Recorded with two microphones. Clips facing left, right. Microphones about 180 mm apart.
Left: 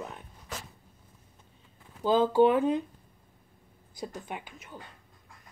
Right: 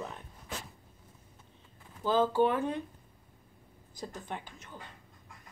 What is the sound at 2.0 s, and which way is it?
Speech, 15° left (ahead or behind).